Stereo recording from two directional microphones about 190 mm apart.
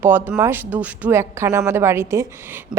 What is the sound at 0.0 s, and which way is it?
Speech, 10° right (ahead or behind).